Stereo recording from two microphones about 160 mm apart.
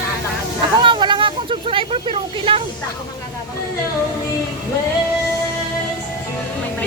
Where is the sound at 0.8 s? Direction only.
30° right (ahead or behind).